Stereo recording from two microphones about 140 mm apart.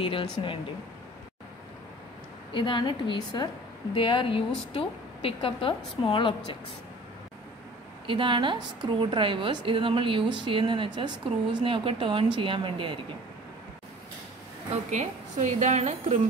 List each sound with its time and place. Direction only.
0.0 s a woman's voice: 35° left (ahead or behind)
2.5 s a woman's voice: 35° left (ahead or behind)
8.1 s a woman's voice: 35° right (ahead or behind)
14.9 s speech: 60° right (ahead or behind)